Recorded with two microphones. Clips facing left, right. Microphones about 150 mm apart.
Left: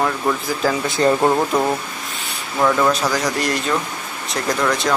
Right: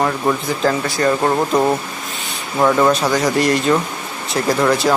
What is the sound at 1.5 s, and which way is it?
Speech, 15° right (ahead or behind).